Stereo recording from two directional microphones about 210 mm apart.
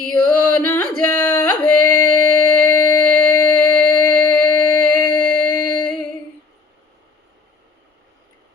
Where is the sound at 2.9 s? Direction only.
15° left (ahead or behind).